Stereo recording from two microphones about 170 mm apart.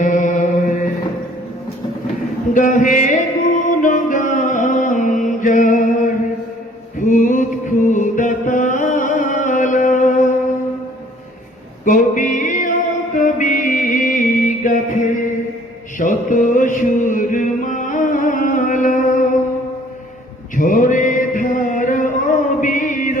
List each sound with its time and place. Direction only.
0.0 s mantra: 50° left (ahead or behind)
2.5 s music: 50° left (ahead or behind)
3.7 s mantra: 50° left (ahead or behind)
11.9 s music: 50° left (ahead or behind)
16.0 s mantra: 50° left (ahead or behind)
20.6 s chant: 50° left (ahead or behind)